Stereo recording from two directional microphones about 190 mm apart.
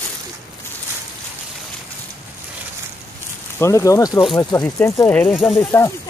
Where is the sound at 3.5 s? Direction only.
15° left (ahead or behind).